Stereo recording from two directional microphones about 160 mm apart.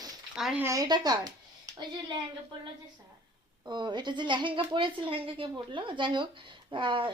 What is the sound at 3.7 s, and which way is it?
Speech, 30° right (ahead or behind).